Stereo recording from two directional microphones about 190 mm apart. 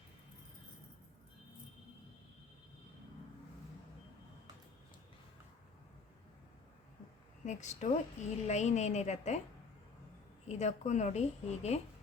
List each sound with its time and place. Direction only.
7.4 s a woman's voice: 40° left (ahead or behind)
10.5 s a woman's voice: 35° left (ahead or behind)